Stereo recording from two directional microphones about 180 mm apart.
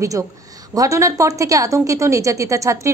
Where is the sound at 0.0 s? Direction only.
15° right (ahead or behind).